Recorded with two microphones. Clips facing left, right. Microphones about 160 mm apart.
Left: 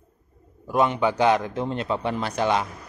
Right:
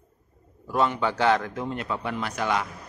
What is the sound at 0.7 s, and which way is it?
Speech, 20° left (ahead or behind).